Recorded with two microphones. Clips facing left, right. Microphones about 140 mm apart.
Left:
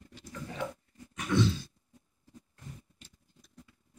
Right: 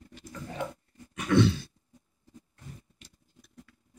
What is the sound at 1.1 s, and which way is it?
Grunt, 65° right (ahead or behind).